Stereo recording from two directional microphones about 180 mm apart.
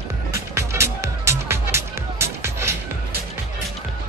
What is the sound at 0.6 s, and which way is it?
Music, 15° right (ahead or behind).